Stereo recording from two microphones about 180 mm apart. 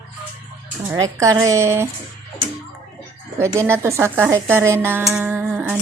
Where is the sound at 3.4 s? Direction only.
15° right (ahead or behind).